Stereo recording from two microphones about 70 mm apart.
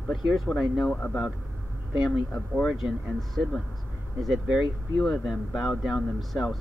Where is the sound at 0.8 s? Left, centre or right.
Centre.